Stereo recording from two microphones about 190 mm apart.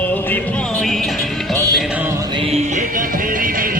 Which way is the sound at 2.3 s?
30° right (ahead or behind).